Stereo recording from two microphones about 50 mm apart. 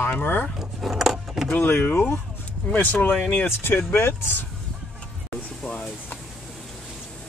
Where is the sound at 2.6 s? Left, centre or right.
Left.